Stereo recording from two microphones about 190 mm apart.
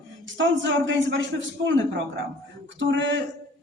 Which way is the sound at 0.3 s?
75° right (ahead or behind).